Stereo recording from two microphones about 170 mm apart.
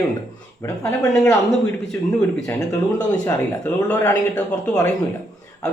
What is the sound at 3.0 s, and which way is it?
Speech, 10° left (ahead or behind).